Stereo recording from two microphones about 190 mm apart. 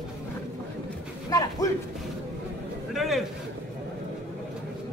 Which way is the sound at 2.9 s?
Centre (ahead or behind).